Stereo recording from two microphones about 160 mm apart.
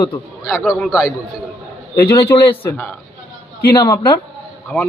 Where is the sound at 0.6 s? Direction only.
Centre (ahead or behind).